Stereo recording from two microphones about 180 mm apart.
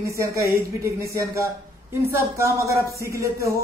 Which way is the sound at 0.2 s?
15° right (ahead or behind).